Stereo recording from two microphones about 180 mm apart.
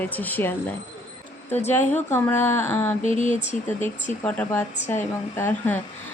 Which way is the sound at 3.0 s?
45° left (ahead or behind).